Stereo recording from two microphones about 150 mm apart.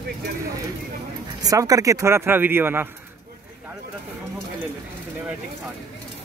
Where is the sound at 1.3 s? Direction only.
25° right (ahead or behind).